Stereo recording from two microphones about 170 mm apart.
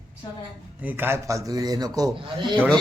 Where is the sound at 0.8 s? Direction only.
10° right (ahead or behind).